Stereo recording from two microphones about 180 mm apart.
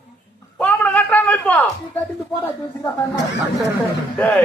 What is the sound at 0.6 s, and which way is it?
A man's voice, 10° left (ahead or behind).